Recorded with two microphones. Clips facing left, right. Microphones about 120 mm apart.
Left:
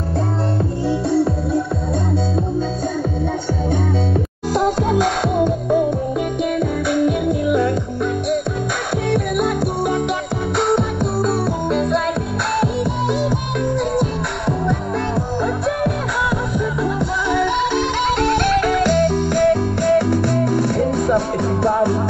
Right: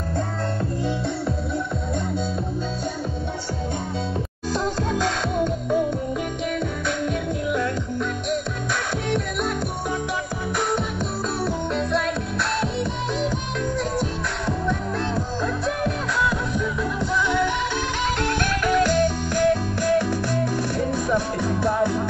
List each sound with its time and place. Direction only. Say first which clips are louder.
4.7 s music: left 6 dB; 15° left (ahead or behind)
9.1 s music: left 7 dB; 15° left (ahead or behind)
18.9 s music: left 5 dB; 15° left (ahead or behind)